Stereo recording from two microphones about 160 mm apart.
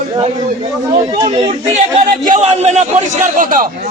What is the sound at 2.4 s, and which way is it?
A man's voice, 45° right (ahead or behind).